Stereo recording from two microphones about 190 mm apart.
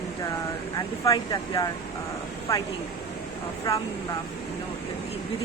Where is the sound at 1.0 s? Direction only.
20° left (ahead or behind).